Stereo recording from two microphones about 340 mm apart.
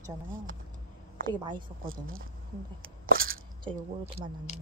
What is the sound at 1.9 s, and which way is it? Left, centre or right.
Speech, right.